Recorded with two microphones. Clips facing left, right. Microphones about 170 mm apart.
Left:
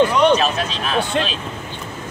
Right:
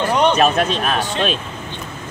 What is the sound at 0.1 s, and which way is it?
Speech, 55° right (ahead or behind).